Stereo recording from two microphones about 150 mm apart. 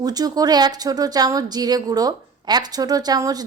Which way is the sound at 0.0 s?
25° right (ahead or behind).